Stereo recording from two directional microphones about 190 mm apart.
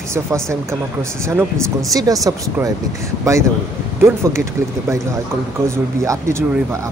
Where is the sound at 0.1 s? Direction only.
15° right (ahead or behind).